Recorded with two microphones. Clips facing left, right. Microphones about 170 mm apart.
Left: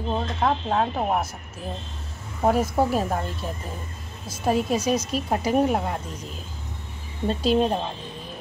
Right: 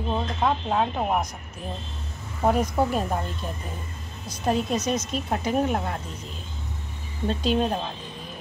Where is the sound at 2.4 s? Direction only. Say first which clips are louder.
Left 1 dB; 5° left (ahead or behind).